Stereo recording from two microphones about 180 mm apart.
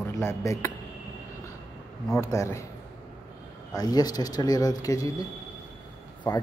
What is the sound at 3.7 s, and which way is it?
Speech, 20° left (ahead or behind).